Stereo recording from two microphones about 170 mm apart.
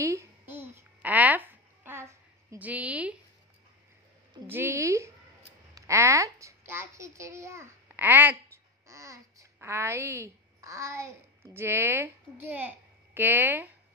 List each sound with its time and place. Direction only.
0.0 s a sound: 15° right (ahead or behind)
4.5 s a woman's voice: 15° right (ahead or behind)
8.8 s babbling: 20° right (ahead or behind)
11.5 s a child's voice: 15° right (ahead or behind)